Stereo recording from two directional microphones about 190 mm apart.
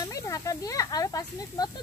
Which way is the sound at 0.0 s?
15° left (ahead or behind).